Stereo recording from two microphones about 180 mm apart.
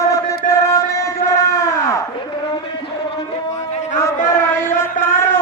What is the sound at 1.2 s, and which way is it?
Crowd, 15° left (ahead or behind).